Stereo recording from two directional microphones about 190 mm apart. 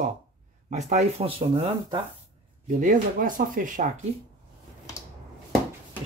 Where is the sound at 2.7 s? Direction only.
40° right (ahead or behind).